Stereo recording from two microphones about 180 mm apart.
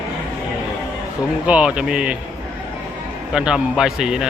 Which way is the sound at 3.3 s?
5° right (ahead or behind).